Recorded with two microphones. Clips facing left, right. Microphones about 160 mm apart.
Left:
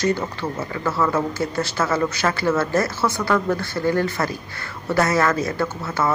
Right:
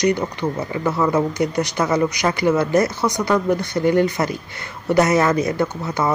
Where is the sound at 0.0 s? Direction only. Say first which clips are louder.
Right 3 dB; 15° right (ahead or behind).